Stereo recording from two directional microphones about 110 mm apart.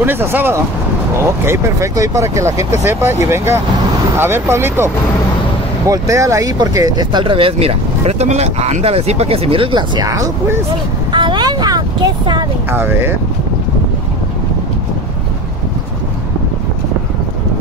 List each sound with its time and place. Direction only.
0.0 s speech: 20° right (ahead or behind)
11.1 s vehicle: 45° right (ahead or behind)
12.7 s speech: 20° right (ahead or behind)